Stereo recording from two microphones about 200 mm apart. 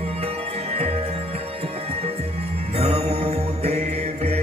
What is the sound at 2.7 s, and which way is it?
Mantra, 30° right (ahead or behind).